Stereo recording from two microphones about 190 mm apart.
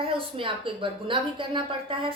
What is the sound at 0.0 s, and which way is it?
A woman's voice, 30° right (ahead or behind).